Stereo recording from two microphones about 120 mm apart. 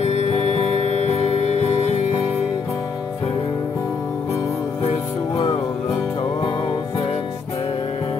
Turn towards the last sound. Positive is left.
turn(degrees=40)  # may be behind; listen again after turning